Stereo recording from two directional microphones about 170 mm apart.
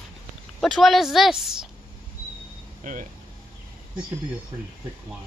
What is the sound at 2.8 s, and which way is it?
Speech, 50° right (ahead or behind).